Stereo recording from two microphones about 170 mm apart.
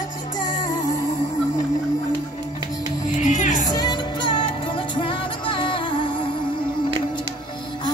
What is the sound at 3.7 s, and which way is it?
Music, 25° left (ahead or behind).